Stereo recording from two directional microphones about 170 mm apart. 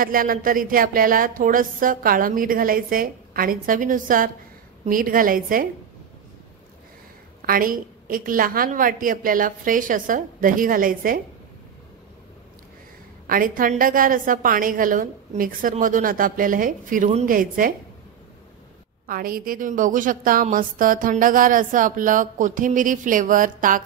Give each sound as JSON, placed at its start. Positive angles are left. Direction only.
{"t": 0.0, "sound": "speech", "side_deg": -55}
{"t": 7.4, "sound": "speech", "side_deg": -55}
{"t": 13.3, "sound": "speech", "side_deg": -55}
{"t": 17.3, "sound": "speech", "side_deg": -55}
{"t": 19.0, "sound": "speech", "side_deg": -55}